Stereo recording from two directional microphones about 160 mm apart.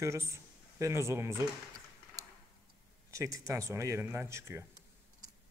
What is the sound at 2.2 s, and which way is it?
Tick-tock, 20° right (ahead or behind).